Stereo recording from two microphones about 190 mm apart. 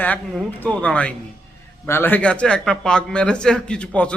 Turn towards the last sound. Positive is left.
turn(degrees=5)  # may be behind; listen again after turning